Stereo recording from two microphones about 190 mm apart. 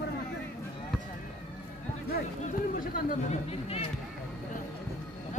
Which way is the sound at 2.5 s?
45° left (ahead or behind).